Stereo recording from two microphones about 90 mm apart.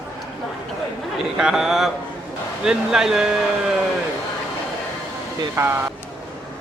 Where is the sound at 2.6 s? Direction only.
5° right (ahead or behind).